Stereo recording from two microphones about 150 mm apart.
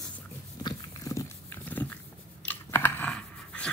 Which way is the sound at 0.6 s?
20° left (ahead or behind).